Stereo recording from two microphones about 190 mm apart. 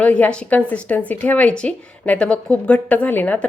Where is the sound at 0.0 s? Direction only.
5° left (ahead or behind).